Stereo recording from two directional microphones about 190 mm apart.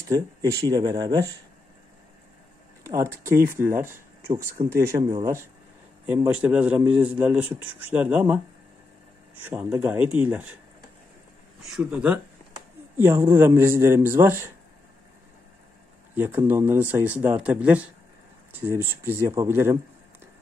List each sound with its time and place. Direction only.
0.1 s speech: 20° right (ahead or behind)
2.8 s speech: 15° right (ahead or behind)
9.5 s speech: 10° right (ahead or behind)
11.6 s speech: 5° right (ahead or behind)
16.4 s speech: 10° right (ahead or behind)